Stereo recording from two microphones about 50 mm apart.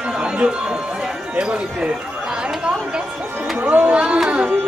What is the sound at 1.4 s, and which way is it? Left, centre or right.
Speech, right.